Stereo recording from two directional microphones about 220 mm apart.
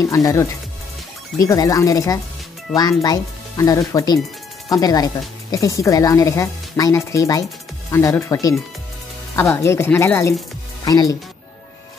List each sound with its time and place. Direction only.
0.0 s speech: 15° left (ahead or behind)